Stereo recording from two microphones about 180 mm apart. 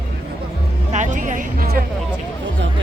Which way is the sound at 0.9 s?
45° right (ahead or behind).